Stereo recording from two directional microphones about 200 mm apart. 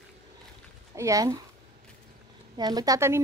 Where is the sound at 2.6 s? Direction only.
20° right (ahead or behind).